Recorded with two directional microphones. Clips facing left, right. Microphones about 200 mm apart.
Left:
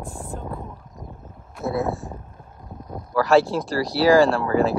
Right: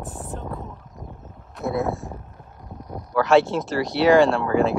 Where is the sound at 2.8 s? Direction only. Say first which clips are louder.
Even; 15° right (ahead or behind).